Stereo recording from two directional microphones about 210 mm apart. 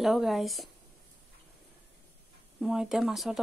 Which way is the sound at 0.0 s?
Centre (ahead or behind).